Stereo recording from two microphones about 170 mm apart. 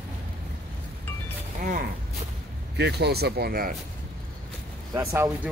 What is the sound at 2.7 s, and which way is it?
Speech, 80° right.